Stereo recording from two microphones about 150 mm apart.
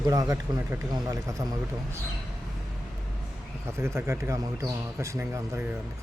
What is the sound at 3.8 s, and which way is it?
Speech, 20° right (ahead or behind).